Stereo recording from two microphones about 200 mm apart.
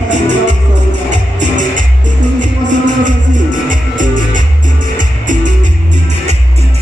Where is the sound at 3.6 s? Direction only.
40° right (ahead or behind).